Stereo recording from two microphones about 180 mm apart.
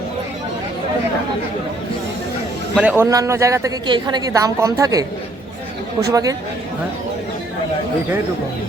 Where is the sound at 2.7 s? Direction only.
10° right (ahead or behind).